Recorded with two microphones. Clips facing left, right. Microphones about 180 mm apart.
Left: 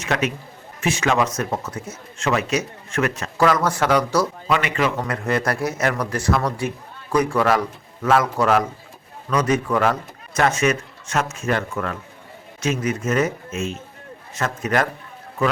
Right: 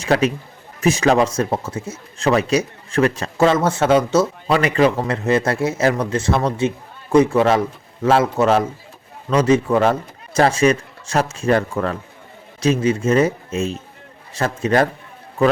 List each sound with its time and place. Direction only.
0.0 s a man's voice: 35° right (ahead or behind)
4.5 s a man's voice: 35° right (ahead or behind)